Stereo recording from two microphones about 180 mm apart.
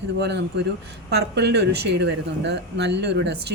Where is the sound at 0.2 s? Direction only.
70° right (ahead or behind).